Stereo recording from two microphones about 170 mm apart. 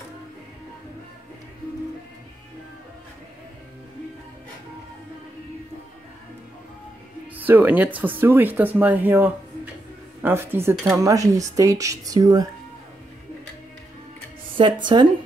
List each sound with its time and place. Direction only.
7.3 s speech: 10° right (ahead or behind)
14.9 s speech: 25° right (ahead or behind)